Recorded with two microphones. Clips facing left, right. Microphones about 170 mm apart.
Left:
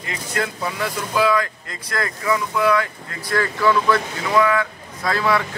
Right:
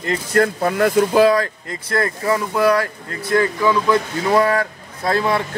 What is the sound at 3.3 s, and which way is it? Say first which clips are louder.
Speech: right 2 dB; 20° right (ahead or behind).